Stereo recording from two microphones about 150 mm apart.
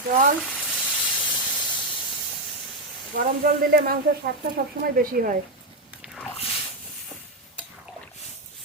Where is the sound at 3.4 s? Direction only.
90° right.